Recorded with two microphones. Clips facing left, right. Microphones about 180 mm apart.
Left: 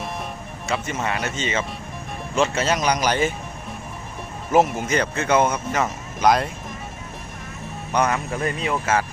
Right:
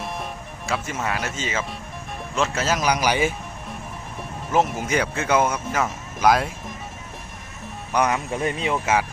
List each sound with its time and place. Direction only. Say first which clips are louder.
0.7 s speech: left 1 dB; 5° right (ahead or behind)
4.5 s speech: left 3 dB; centre (ahead or behind)
7.9 s speech: even; 10° right (ahead or behind)
8.3 s speech: even; 25° right (ahead or behind)